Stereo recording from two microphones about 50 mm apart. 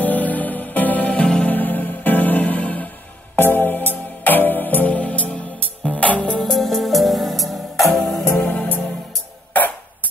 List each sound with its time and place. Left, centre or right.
0.0 s music: left
1.5 s music: left
3.3 s music: left
6.4 s music: centre
8.4 s music: left